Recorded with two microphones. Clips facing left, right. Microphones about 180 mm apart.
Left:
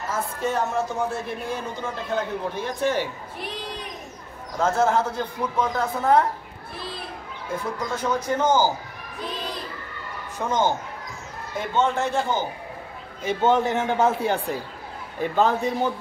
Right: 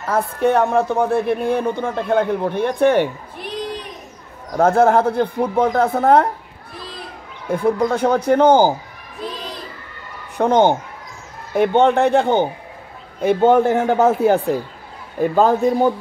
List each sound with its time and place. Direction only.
0.1 s a man's voice: 65° right (ahead or behind)
4.6 s a man's voice: 60° right (ahead or behind)
7.4 s a man's voice: 60° right (ahead or behind)
10.3 s a man's voice: 65° right (ahead or behind)
13.7 s a man's voice: 40° right (ahead or behind)